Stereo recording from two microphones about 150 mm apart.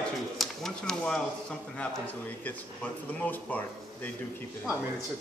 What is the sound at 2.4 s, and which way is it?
A man's voice, 10° left (ahead or behind).